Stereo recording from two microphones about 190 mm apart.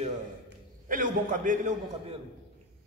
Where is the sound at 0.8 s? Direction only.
45° right (ahead or behind).